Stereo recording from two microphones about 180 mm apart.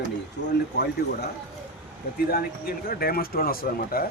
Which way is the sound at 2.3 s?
55° left (ahead or behind).